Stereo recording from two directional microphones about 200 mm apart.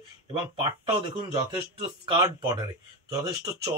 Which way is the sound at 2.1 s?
15° right (ahead or behind).